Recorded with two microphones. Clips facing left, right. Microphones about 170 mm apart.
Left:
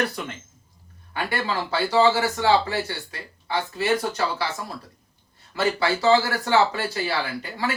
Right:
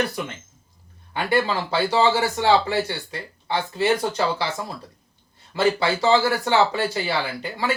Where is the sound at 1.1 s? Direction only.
20° right (ahead or behind).